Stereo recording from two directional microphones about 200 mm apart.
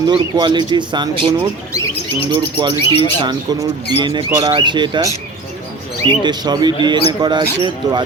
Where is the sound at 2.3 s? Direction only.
20° right (ahead or behind).